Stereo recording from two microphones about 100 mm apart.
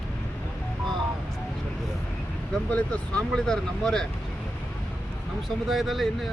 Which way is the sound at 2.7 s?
15° left (ahead or behind).